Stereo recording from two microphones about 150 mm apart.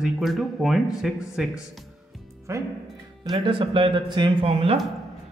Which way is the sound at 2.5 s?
20° right (ahead or behind).